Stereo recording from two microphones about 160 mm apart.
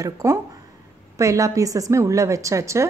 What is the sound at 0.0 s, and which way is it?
A woman's voice, 20° right (ahead or behind).